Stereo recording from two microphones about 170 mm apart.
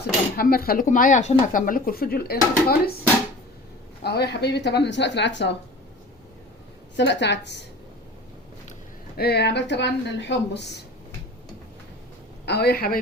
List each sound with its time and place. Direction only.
0.0 s speech: 60° left (ahead or behind)
4.0 s a woman's voice: 75° left (ahead or behind); by 5.5 s 90° left
6.9 s speech: 90° left
9.1 s speech: 70° left (ahead or behind)
12.5 s speech: 70° left (ahead or behind)